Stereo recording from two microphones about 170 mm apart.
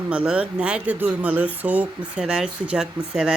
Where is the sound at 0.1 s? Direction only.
5° right (ahead or behind).